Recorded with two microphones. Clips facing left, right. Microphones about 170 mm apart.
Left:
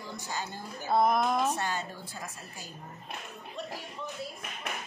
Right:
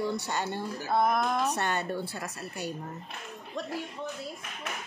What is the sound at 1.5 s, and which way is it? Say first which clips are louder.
A woman's voice: right 4 dB; 65° right (ahead or behind).